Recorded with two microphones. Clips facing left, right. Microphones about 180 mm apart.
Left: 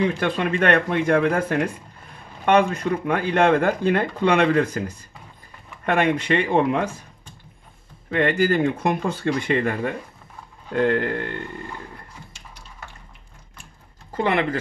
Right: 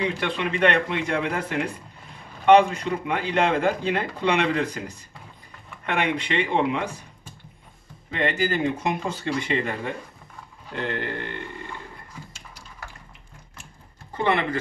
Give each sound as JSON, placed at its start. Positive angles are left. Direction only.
{"t": 0.0, "sound": "speech", "side_deg": 45}
{"t": 5.9, "sound": "speech", "side_deg": 50}
{"t": 8.1, "sound": "speech", "side_deg": 55}